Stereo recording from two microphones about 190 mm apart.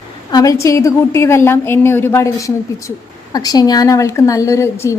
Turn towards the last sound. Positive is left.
turn(degrees=15)  # may be behind; listen again after turning